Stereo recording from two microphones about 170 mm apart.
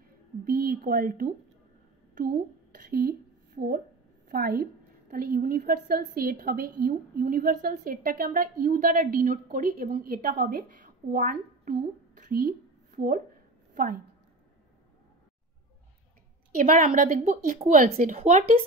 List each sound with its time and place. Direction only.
0.5 s a woman's voice: 60° right (ahead or behind)
12.2 s a sound: 60° right (ahead or behind)
13.7 s a woman's voice: 50° right (ahead or behind)
16.5 s a woman's voice: 50° right (ahead or behind)